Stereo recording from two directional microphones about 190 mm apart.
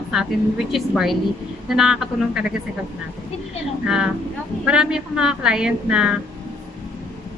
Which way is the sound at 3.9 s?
5° right (ahead or behind).